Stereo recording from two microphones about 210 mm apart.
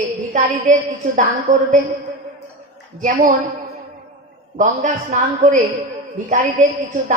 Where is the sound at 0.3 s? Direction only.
35° right (ahead or behind).